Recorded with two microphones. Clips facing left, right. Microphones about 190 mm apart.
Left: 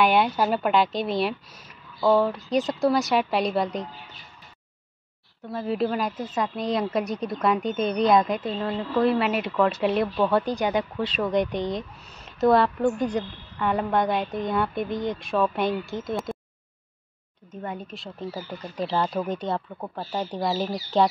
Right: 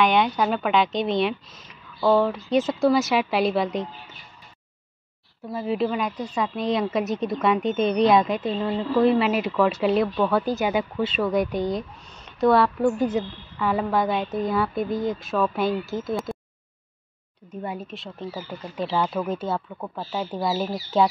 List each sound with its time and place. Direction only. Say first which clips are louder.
0.0 s a woman's voice: even; 5° left (ahead or behind)
5.5 s a woman's voice: right 1 dB; 5° right (ahead or behind)
7.1 s speech: right 3 dB; 25° right (ahead or behind)
7.3 s a woman's voice: right 2 dB; centre (ahead or behind)
17.5 s speech: right 2 dB; 10° right (ahead or behind)
17.8 s a woman's voice: even; centre (ahead or behind)